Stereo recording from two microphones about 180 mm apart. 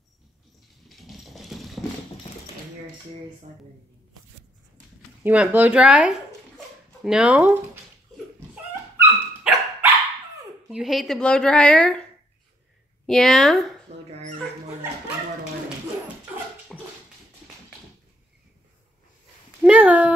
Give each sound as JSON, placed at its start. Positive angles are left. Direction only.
{"t": 0.8, "sound": "a sound", "side_deg": 0}
{"t": 5.2, "sound": "speech", "side_deg": -10}
{"t": 8.9, "sound": "dog", "side_deg": -10}
{"t": 10.7, "sound": "speech", "side_deg": 0}
{"t": 13.9, "sound": "speech", "side_deg": -35}
{"t": 19.6, "sound": "speech", "side_deg": -10}